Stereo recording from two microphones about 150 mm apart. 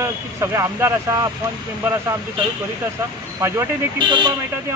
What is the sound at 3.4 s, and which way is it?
Speech, 20° right (ahead or behind).